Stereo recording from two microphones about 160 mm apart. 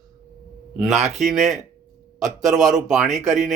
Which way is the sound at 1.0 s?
45° right (ahead or behind).